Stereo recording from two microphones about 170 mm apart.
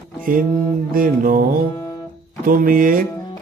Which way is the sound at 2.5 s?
60° right (ahead or behind).